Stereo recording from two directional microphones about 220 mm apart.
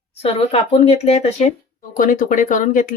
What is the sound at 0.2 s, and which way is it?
Speech, 25° left (ahead or behind).